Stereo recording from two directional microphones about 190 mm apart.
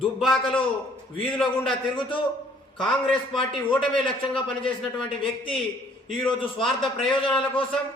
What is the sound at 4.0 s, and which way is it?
A man's voice, 25° left (ahead or behind).